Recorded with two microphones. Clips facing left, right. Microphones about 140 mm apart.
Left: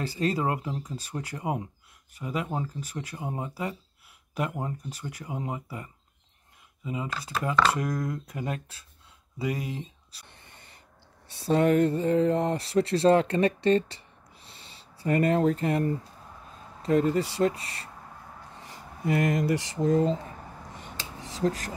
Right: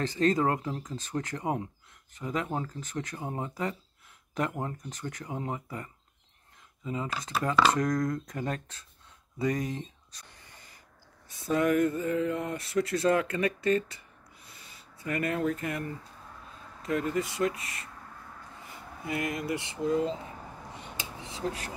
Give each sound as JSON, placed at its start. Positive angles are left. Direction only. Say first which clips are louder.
{"t": 0.0, "sound": "speech", "louder": "right 2 dB", "side_deg": 10}
{"t": 11.2, "sound": "speech", "louder": "left 4 dB", "side_deg": 30}
{"t": 21.2, "sound": "a sound", "louder": "left 7 dB", "side_deg": 40}